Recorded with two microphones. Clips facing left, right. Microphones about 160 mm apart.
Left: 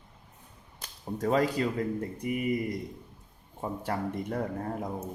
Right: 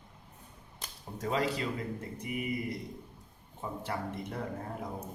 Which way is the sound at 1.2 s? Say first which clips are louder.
Left 5 dB; 45° left (ahead or behind).